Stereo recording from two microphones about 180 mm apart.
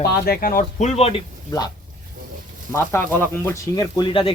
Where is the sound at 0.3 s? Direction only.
50° left (ahead or behind); by 1.2 s 35° left (ahead or behind).